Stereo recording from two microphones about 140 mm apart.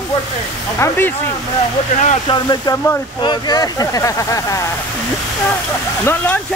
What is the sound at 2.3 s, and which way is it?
Speech, 30° left (ahead or behind).